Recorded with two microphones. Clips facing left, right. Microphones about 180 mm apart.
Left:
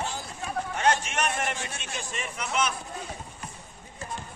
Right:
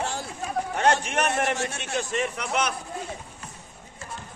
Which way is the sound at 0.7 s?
60° right (ahead or behind).